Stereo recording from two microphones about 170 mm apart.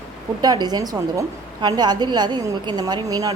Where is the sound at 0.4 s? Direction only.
25° right (ahead or behind).